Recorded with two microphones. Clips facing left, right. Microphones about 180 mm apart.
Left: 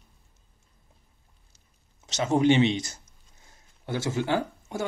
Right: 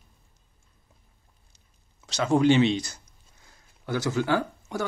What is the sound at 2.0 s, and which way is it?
Speech, 20° left (ahead or behind).